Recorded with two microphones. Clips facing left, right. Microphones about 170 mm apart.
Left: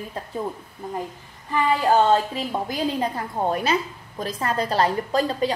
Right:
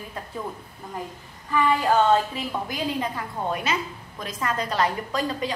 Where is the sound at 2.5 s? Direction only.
35° left (ahead or behind).